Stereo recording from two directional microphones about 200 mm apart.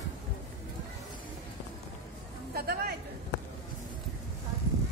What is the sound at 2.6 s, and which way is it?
Speech, 50° right (ahead or behind).